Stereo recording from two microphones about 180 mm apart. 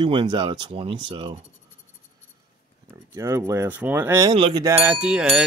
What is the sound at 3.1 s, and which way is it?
Speech, 15° right (ahead or behind).